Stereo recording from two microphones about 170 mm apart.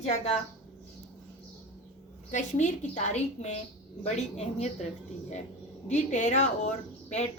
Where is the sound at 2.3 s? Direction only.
45° left (ahead or behind).